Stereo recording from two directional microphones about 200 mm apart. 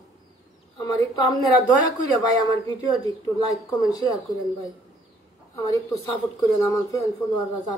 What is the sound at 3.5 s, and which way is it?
Speech, 20° left (ahead or behind).